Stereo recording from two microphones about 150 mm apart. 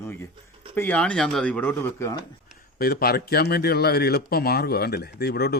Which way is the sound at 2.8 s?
90° left.